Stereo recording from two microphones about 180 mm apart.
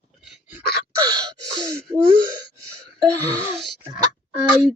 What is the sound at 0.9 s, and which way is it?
Gasp, 20° right (ahead or behind).